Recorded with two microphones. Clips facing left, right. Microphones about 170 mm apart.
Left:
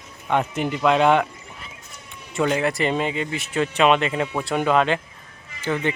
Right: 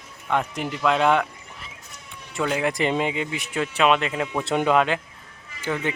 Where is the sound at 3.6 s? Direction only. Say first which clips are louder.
Left 2 dB; centre (ahead or behind).